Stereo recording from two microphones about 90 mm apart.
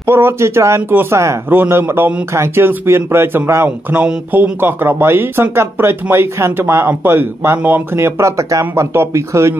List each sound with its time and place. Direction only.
0.0 s speech: 25° right (ahead or behind)